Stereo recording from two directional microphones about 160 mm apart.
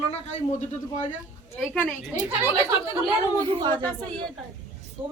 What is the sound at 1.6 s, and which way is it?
Speech, 10° left (ahead or behind).